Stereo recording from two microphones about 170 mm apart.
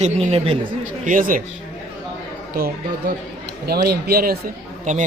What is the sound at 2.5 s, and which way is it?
Speech, 60° right (ahead or behind).